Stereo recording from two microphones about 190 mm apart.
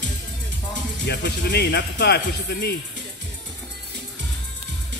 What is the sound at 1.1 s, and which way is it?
Speech, 60° left (ahead or behind).